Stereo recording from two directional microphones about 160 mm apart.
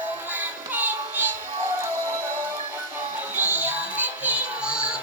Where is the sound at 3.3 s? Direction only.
10° right (ahead or behind).